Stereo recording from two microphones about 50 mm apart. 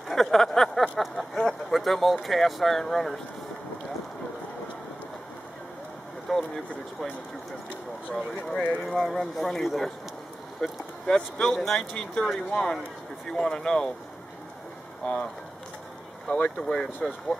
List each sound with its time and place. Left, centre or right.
0.1 s a sound: centre
1.7 s speech: centre
6.3 s speech: centre
8.5 s speech: centre
8.8 s speech: centre
10.6 s speech: centre
13.3 s speech: centre
16.3 s speech: centre